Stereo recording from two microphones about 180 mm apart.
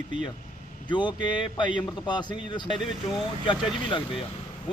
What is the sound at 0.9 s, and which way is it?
Speech, 25° left (ahead or behind).